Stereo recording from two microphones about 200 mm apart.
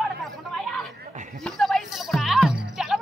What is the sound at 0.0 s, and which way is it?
Chatter, centre (ahead or behind).